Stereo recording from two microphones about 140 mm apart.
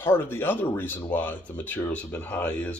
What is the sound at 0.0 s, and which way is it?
Speech, 15° left (ahead or behind).